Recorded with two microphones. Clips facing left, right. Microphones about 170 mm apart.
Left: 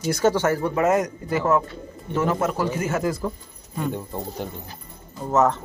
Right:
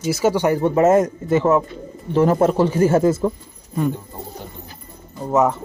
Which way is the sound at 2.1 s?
35° right (ahead or behind).